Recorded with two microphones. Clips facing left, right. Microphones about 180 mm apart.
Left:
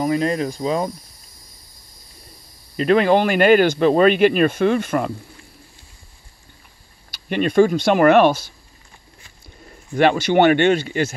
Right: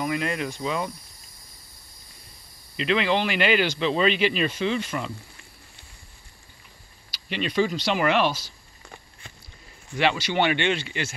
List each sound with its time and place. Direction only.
0.0 s speech: 35° left (ahead or behind)
2.8 s speech: 45° left (ahead or behind)
7.1 s speech: 50° left (ahead or behind)
9.9 s speech: 50° left (ahead or behind)